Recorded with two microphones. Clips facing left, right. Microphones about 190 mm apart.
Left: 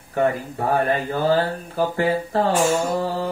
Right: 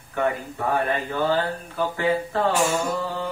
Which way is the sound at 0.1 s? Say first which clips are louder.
Left 4 dB; 35° left (ahead or behind).